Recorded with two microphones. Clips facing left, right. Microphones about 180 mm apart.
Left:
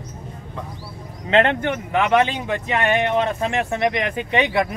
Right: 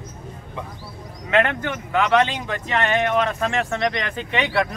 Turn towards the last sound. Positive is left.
turn(degrees=15)  # may be behind; listen again after turning